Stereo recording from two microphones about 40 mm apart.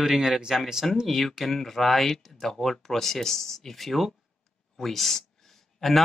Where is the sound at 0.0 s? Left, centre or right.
Centre.